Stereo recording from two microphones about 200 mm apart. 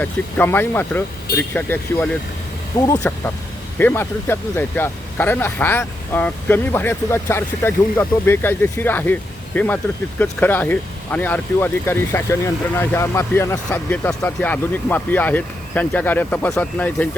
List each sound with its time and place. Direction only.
0.0 s speech: 10° left (ahead or behind)